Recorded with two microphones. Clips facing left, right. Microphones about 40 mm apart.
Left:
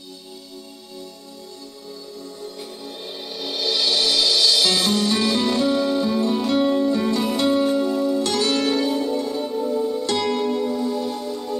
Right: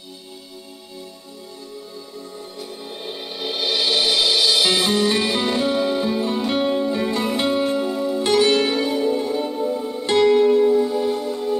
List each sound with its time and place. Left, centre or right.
3.1 s music: right